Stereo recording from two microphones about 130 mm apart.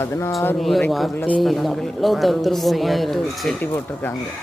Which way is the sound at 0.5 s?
Centre (ahead or behind).